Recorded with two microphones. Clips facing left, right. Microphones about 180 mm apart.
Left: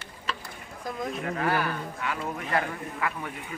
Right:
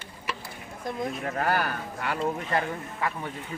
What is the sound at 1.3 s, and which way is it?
Speech, 45° right (ahead or behind).